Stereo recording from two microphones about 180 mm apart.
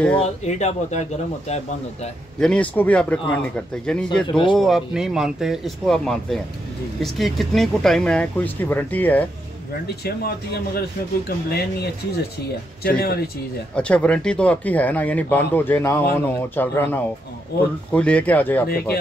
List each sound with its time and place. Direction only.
0.2 s speech: 40° left (ahead or behind)
2.4 s speech: 5° left (ahead or behind)
4.3 s speech: 25° left (ahead or behind)
4.6 s speech: centre (ahead or behind)
11.2 s speech: 65° left (ahead or behind)
13.7 s speech: 5° left (ahead or behind)